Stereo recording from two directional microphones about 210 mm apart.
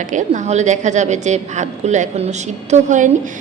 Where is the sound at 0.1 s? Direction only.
35° right (ahead or behind).